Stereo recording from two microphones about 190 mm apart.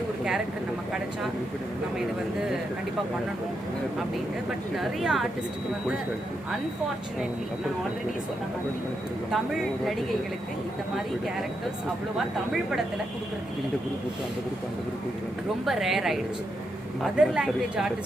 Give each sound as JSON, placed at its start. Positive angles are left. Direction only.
{"t": 4.8, "sound": "a woman's voice", "side_deg": 0}
{"t": 9.3, "sound": "a woman's voice", "side_deg": 0}
{"t": 15.6, "sound": "a woman's voice", "side_deg": 0}